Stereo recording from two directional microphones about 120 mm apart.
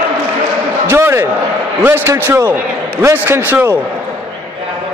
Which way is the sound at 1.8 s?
20° right (ahead or behind).